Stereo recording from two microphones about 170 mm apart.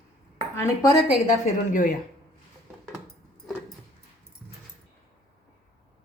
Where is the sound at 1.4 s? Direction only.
50° left (ahead or behind).